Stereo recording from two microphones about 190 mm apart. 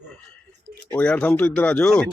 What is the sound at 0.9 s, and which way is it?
Speech, 5° left (ahead or behind).